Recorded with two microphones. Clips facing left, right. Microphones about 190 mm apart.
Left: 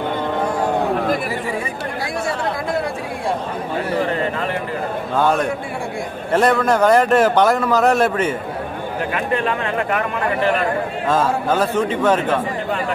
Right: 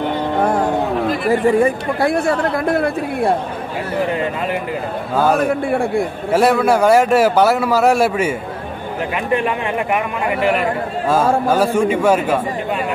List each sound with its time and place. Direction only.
1.3 s speech: 50° right (ahead or behind)
5.1 s a man's voice: 5° right (ahead or behind)
5.7 s speech: 60° right (ahead or behind)
6.3 s a man's voice: 10° right (ahead or behind)
11.1 s a man's voice: 10° right (ahead or behind)